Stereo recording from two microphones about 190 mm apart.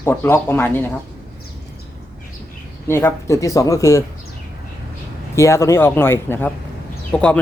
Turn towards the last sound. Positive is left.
turn(degrees=5)  # may be behind; listen again after turning